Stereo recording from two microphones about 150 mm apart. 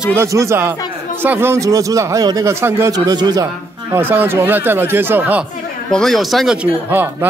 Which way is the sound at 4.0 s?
15° right (ahead or behind).